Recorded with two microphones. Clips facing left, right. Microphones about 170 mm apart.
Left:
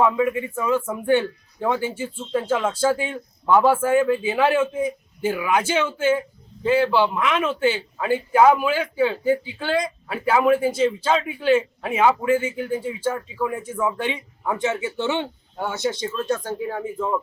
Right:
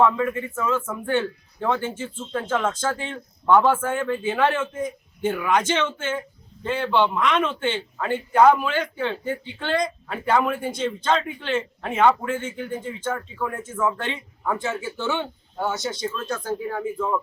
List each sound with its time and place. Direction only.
0.0 s speech: 10° left (ahead or behind); by 16.7 s 30° left (ahead or behind)